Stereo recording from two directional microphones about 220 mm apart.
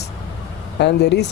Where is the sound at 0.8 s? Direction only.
50° left (ahead or behind).